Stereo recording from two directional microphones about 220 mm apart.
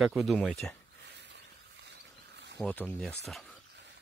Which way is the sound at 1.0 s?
50° right (ahead or behind).